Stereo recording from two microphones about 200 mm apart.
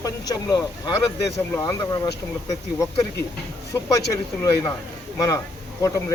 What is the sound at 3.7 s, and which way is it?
Speech, 15° left (ahead or behind).